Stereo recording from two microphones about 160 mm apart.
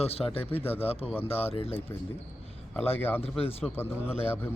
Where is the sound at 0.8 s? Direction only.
40° left (ahead or behind).